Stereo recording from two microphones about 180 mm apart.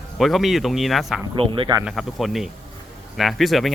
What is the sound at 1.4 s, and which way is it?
Speech, 30° right (ahead or behind).